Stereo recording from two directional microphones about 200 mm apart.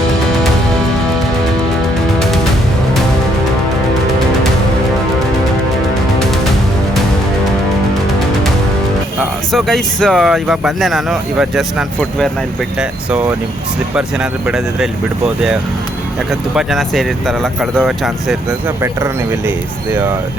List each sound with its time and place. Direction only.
9.5 s speech: centre (ahead or behind)
16.6 s speech: centre (ahead or behind)
19.5 s speech: 10° right (ahead or behind)